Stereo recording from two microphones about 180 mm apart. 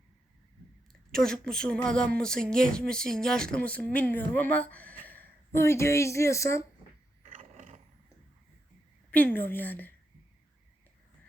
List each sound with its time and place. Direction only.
1.1 s a woman's voice: 5° left (ahead or behind)
7.3 s roar: 45° right (ahead or behind)
9.1 s a woman's voice: 10° left (ahead or behind)